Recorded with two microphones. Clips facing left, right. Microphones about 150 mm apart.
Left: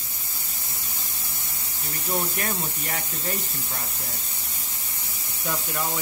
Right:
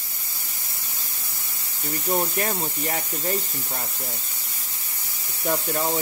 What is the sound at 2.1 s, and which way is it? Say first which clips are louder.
Speech: right 3 dB; 30° right (ahead or behind).